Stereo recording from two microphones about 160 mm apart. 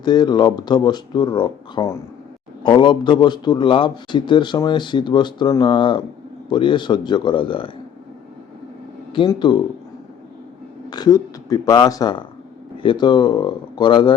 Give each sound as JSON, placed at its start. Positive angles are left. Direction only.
{"t": 0.0, "sound": "a man's voice", "side_deg": 25}
{"t": 9.1, "sound": "a man's voice", "side_deg": 30}
{"t": 10.8, "sound": "a man's voice", "side_deg": 25}